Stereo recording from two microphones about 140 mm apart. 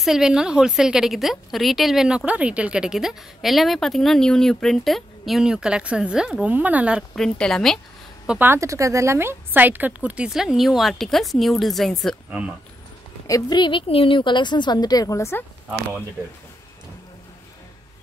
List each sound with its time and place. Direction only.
0.0 s a woman's voice: 5° right (ahead or behind)
7.2 s a woman's voice: 5° left (ahead or behind)
8.3 s speech: 15° right (ahead or behind); by 12.2 s 5° left (ahead or behind)
13.3 s a woman's voice: 30° left (ahead or behind)